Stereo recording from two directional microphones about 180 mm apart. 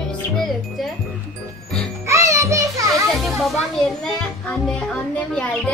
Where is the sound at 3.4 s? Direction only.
Centre (ahead or behind).